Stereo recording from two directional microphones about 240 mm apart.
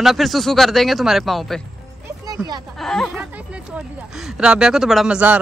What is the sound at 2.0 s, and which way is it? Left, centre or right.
Music, centre.